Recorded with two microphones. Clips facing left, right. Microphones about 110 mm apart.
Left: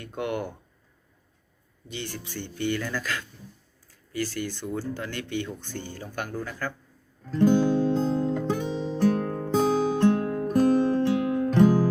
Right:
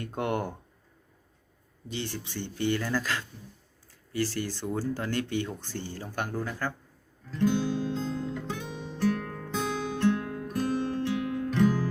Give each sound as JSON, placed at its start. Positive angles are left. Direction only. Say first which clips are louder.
{"t": 0.0, "sound": "speech", "louder": "even", "side_deg": -35}
{"t": 1.9, "sound": "speech", "louder": "right 1 dB", "side_deg": -30}
{"t": 7.3, "sound": "music", "louder": "left 6 dB", "side_deg": 45}